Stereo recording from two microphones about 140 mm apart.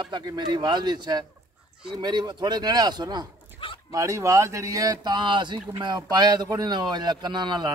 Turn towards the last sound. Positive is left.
turn(degrees=-30)  # may be behind; listen again after turning